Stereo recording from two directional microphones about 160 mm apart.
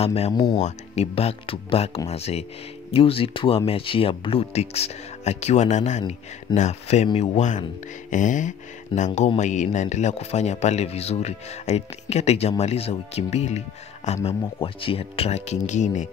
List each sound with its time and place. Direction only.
0.0 s speech: 40° left (ahead or behind)
0.3 s speech: 25° left (ahead or behind)
0.6 s speech: 45° left (ahead or behind)